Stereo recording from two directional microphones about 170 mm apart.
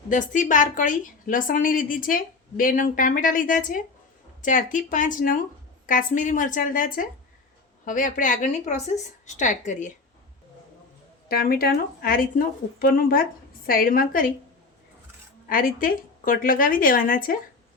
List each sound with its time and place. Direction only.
0.1 s a woman's voice: 50° left (ahead or behind)
11.3 s speech: 60° left (ahead or behind)
15.4 s speech: 55° left (ahead or behind)